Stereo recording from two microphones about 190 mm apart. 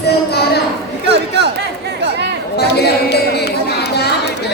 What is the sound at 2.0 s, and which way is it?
Chatter, 65° right (ahead or behind).